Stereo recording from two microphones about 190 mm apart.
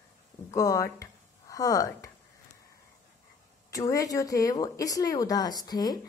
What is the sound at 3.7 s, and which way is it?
A woman's voice, 20° left (ahead or behind).